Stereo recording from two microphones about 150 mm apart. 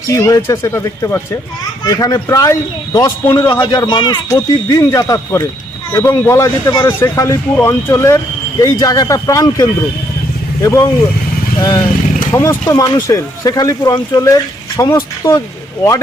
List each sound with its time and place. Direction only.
0.1 s speech: 20° left (ahead or behind)
4.3 s speech: 20° left (ahead or behind)
12.3 s speech: 15° left (ahead or behind)